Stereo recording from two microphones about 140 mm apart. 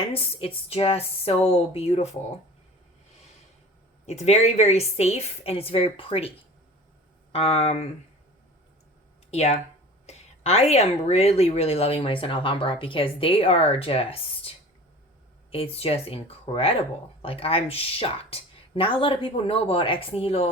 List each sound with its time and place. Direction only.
0.1 s a woman's voice: 40° left (ahead or behind)
4.0 s a woman's voice: 55° left (ahead or behind)
7.3 s a woman's voice: 45° left (ahead or behind)
9.3 s a woman's voice: 50° left (ahead or behind)